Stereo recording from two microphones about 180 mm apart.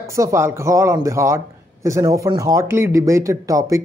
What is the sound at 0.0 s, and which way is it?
A man's voice, 15° right (ahead or behind).